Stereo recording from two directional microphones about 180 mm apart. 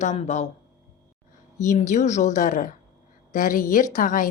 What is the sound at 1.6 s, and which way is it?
A woman's voice, 40° left (ahead or behind).